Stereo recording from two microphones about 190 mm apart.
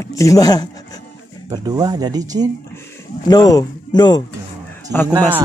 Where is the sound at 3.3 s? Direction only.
20° left (ahead or behind).